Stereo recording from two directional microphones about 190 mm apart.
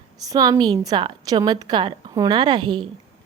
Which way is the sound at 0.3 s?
20° right (ahead or behind).